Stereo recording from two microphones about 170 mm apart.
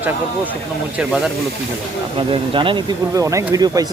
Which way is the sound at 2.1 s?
30° right (ahead or behind).